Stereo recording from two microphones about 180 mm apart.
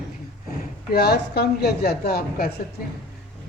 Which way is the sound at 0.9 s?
60° left (ahead or behind).